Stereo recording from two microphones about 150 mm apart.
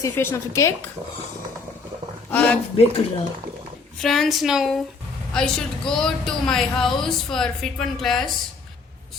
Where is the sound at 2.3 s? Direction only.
10° left (ahead or behind).